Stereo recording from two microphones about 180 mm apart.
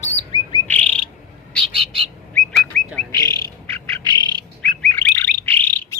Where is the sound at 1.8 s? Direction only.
30° right (ahead or behind).